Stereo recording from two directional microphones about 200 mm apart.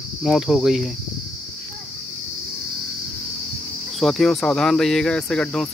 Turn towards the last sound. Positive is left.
turn(degrees=5)  # may be behind; listen again after turning